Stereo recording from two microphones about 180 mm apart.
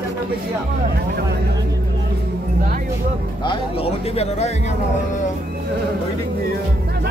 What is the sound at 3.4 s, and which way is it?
Speech, 30° left (ahead or behind).